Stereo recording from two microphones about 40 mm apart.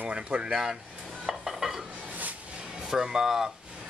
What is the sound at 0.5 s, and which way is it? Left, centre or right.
Speech, centre.